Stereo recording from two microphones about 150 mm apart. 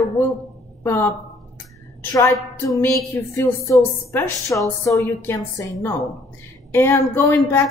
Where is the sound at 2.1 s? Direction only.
20° left (ahead or behind).